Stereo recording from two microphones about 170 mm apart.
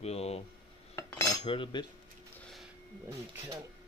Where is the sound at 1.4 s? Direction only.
30° left (ahead or behind).